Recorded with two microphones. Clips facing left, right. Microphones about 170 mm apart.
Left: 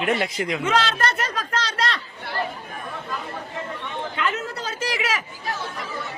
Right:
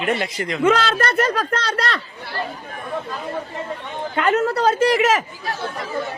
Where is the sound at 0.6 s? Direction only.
55° right (ahead or behind).